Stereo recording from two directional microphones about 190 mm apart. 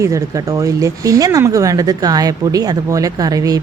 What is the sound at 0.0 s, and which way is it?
A woman's voice, 15° right (ahead or behind).